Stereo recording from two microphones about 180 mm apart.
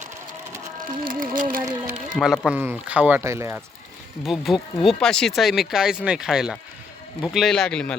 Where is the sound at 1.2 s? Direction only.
50° right (ahead or behind).